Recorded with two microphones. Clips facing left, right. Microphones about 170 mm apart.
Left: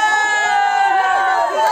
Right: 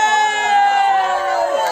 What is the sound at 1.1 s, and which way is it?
Chatter, 60° left (ahead or behind).